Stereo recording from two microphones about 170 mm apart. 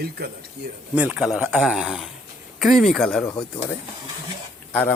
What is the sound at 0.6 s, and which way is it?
Speech, 85° right.